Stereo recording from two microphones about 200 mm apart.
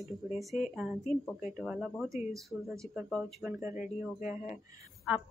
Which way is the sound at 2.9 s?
Centre (ahead or behind).